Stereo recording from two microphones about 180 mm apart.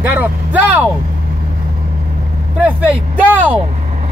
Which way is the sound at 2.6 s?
10° right (ahead or behind).